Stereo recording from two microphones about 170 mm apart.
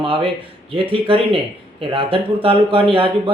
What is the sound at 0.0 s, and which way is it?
Speech, 30° right (ahead or behind).